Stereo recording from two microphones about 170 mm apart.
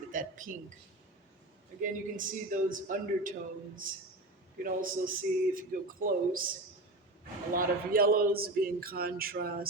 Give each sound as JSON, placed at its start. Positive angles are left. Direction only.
{"t": 0.1, "sound": "a sound", "side_deg": -50}
{"t": 1.8, "sound": "a man's voice", "side_deg": -50}
{"t": 7.5, "sound": "a man's voice", "side_deg": -55}